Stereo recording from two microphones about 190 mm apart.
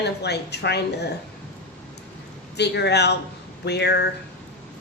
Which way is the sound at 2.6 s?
60° left (ahead or behind).